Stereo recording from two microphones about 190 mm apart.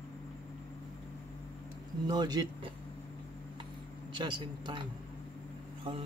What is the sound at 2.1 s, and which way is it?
Speech, 20° right (ahead or behind).